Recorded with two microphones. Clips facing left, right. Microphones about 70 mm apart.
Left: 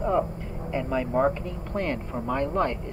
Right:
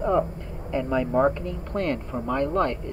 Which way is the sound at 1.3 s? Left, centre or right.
Centre.